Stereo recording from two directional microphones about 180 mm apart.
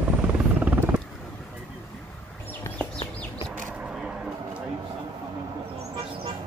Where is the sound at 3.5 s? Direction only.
5° right (ahead or behind).